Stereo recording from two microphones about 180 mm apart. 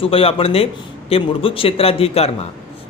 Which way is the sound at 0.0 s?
30° left (ahead or behind).